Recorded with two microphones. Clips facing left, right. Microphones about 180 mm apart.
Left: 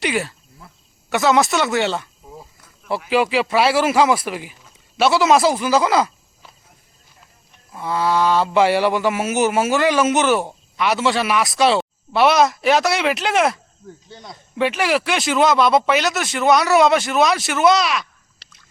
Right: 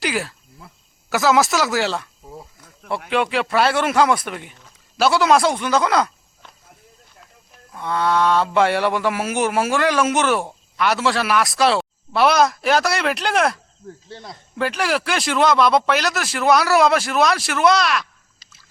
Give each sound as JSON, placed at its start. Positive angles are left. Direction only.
{"t": 0.0, "sound": "cricket", "side_deg": 0}
{"t": 1.1, "sound": "speech", "side_deg": 0}
{"t": 7.7, "sound": "mantra", "side_deg": 5}
{"t": 18.4, "sound": "a sound", "side_deg": 70}